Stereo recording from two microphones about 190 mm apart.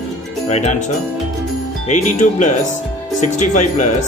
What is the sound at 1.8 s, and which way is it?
Speech, 40° left (ahead or behind).